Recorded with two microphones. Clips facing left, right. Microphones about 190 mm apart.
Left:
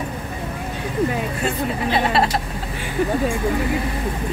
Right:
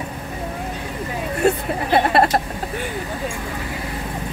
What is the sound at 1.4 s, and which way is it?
Speech, 55° right (ahead or behind).